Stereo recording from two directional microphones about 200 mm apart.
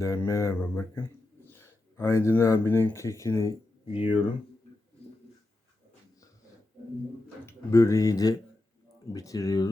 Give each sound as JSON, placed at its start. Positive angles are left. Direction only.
{"t": 0.0, "sound": "speech", "side_deg": 15}
{"t": 3.9, "sound": "speech", "side_deg": 25}
{"t": 7.4, "sound": "speech", "side_deg": 15}